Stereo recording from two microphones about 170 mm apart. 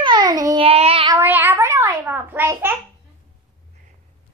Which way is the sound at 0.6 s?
35° right (ahead or behind).